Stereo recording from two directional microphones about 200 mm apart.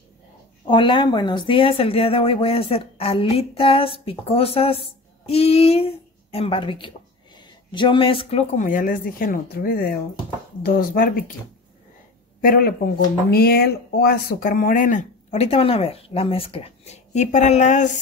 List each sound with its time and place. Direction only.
0.7 s speech: 25° left (ahead or behind); by 11.3 s 45° left (ahead or behind)
12.4 s speech: 45° left (ahead or behind)